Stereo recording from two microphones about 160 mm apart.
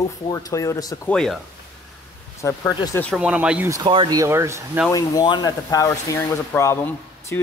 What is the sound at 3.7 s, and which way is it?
Speech, 30° right (ahead or behind).